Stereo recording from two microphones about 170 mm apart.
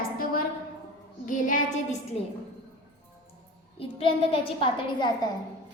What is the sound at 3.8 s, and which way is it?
A child's voice, 30° left (ahead or behind).